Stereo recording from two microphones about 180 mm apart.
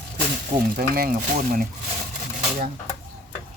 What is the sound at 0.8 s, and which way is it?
Speech, 55° right (ahead or behind).